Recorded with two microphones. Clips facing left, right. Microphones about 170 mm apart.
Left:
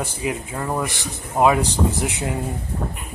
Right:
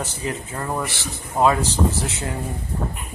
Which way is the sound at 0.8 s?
15° left (ahead or behind).